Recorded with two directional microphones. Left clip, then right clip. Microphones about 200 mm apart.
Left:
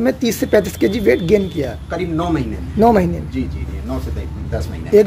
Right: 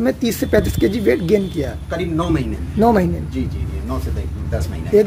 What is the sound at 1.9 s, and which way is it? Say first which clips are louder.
Speech: even; 10° right (ahead or behind).